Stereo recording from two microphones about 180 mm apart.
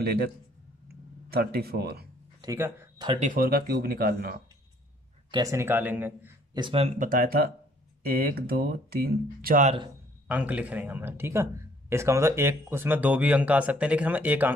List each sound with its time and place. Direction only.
0.0 s speech: 60° right (ahead or behind)
0.8 s a sound: 60° right (ahead or behind)
2.4 s speech: 15° right (ahead or behind)
3.2 s speech: 50° right (ahead or behind)
5.3 s speech: 20° right (ahead or behind)
6.5 s speech: 30° right (ahead or behind)
7.0 s speech: 50° right (ahead or behind)
10.2 s speech: 10° right (ahead or behind)